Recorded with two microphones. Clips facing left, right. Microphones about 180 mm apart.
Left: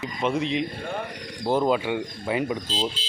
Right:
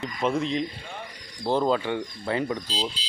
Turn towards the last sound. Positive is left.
turn(degrees=25)  # may be behind; listen again after turning